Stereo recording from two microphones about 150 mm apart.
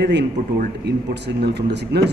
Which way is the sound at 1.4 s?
90° right.